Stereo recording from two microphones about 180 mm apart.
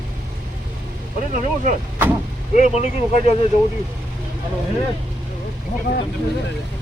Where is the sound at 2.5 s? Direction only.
40° left (ahead or behind).